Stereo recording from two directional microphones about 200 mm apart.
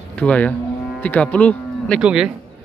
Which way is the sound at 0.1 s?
5° left (ahead or behind).